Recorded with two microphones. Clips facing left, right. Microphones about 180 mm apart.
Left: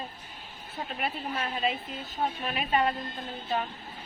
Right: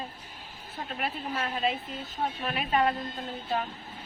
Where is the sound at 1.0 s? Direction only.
Centre (ahead or behind).